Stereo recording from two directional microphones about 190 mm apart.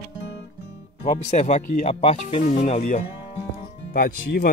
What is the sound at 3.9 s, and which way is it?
Speech, 55° left (ahead or behind).